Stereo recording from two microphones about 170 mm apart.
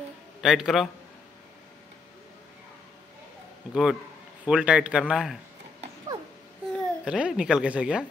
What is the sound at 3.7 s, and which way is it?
Speech, centre (ahead or behind).